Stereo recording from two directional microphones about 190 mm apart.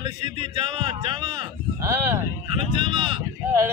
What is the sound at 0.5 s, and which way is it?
Speech, 25° right (ahead or behind).